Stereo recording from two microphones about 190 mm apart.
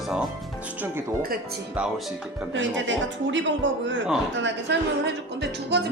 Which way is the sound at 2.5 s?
80° right.